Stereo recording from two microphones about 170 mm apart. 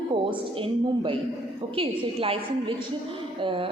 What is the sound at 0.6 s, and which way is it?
A woman's voice, 30° right (ahead or behind).